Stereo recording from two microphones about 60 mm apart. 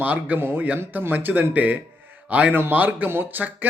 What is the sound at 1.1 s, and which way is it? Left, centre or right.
A man's voice, right.